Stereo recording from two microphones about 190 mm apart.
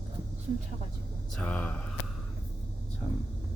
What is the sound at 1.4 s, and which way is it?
Speech, 5° left (ahead or behind).